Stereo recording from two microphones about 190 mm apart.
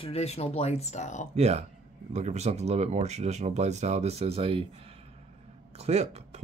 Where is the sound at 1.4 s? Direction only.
35° right (ahead or behind).